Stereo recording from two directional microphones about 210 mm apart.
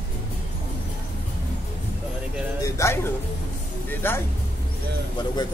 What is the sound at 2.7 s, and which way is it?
Speech, 15° left (ahead or behind).